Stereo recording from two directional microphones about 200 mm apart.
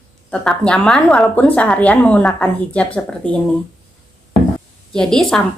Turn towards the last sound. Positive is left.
turn(degrees=0)  # may be behind; listen again after turning